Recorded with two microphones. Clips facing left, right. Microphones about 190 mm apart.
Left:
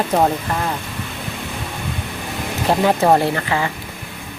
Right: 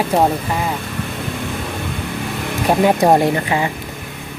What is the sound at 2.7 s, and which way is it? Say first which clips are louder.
Speech: right 2 dB; 15° right (ahead or behind).